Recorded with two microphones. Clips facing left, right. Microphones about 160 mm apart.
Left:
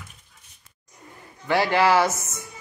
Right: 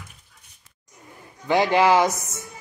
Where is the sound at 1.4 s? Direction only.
20° right (ahead or behind).